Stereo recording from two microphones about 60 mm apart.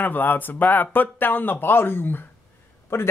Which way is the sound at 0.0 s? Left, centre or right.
Left.